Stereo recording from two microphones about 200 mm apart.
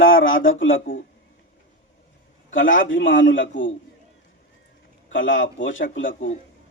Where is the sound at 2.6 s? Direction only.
40° left (ahead or behind).